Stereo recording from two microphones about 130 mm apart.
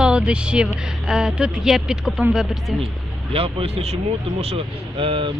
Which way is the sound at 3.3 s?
45° right (ahead or behind).